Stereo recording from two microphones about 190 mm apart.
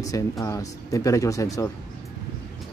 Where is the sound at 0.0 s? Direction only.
15° left (ahead or behind).